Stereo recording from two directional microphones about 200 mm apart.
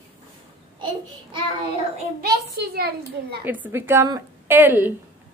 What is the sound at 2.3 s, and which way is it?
Speech, 50° right (ahead or behind).